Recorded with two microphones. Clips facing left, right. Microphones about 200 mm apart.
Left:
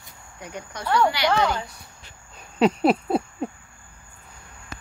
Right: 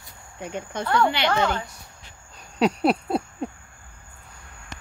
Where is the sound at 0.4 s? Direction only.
25° right (ahead or behind).